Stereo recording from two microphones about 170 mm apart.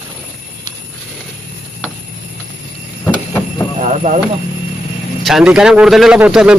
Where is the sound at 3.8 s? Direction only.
40° right (ahead or behind).